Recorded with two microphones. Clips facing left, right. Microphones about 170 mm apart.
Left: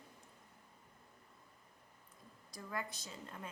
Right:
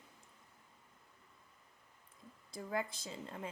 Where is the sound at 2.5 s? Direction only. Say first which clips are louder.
Right 5 dB; 25° right (ahead or behind).